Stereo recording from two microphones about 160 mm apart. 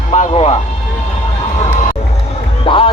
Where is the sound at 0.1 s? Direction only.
45° left (ahead or behind).